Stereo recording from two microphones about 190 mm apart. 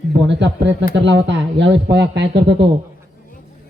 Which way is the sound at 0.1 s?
65° right (ahead or behind).